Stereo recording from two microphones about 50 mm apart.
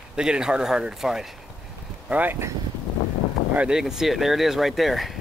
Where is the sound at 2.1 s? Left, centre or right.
Right.